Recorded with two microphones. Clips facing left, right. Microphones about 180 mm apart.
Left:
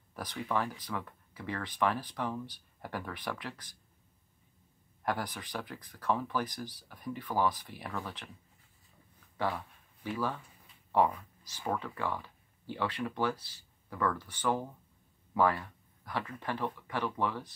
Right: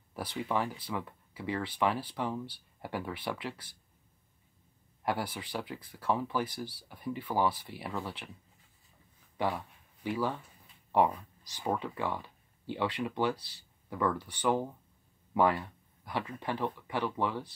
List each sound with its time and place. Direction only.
0.1 s speech: 10° right (ahead or behind)
5.0 s speech: 10° right (ahead or behind)
10.0 s speech: 15° right (ahead or behind)